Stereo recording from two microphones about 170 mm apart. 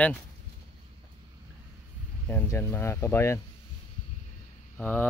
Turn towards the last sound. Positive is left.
turn(degrees=10)  # may be behind; listen again after turning